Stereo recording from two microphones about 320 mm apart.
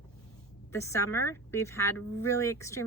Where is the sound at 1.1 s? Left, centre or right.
Left.